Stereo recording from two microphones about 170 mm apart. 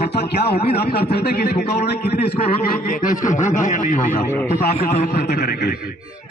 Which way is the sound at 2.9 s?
50° left (ahead or behind).